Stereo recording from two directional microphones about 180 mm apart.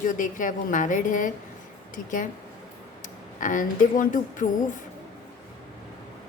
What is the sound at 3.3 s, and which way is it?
A woman's voice, 45° left (ahead or behind).